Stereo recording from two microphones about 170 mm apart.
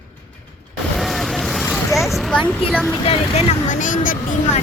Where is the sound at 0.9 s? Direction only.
Centre (ahead or behind).